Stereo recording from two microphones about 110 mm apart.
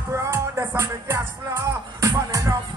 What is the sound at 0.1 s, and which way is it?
Music, 25° right (ahead or behind).